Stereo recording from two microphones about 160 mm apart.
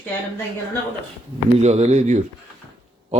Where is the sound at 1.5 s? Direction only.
40° right (ahead or behind).